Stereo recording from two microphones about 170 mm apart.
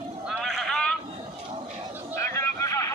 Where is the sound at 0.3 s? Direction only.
Centre (ahead or behind).